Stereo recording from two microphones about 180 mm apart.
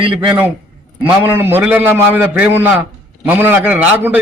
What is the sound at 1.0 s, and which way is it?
A man's voice, 10° right (ahead or behind).